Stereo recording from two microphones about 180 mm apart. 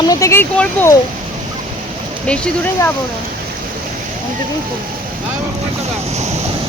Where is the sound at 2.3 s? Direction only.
5° left (ahead or behind).